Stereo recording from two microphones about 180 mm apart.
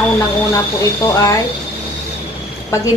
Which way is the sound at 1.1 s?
20° left (ahead or behind).